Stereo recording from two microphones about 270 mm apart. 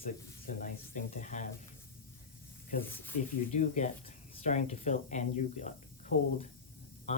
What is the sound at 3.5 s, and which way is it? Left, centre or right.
Speech, left.